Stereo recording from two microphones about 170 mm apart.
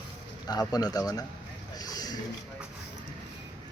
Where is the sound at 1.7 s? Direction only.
20° left (ahead or behind).